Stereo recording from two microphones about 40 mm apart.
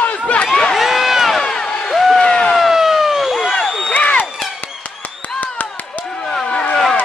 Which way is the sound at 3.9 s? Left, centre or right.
Left.